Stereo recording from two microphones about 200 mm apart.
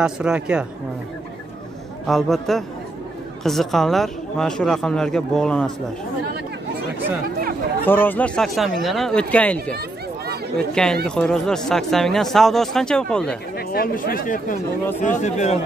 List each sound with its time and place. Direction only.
0.0 s speech: 5° right (ahead or behind)
2.0 s speech: centre (ahead or behind)
7.2 s chatter: 50° right (ahead or behind)
7.8 s speech: 10° left (ahead or behind)
9.8 s a sound: 50° right (ahead or behind)
10.7 s speech: 5° left (ahead or behind)
13.6 s speech: 50° left (ahead or behind)